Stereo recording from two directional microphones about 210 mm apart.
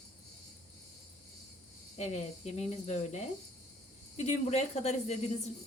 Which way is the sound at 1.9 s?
30° left (ahead or behind).